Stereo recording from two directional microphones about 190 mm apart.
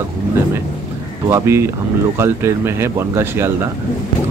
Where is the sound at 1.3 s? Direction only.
15° right (ahead or behind).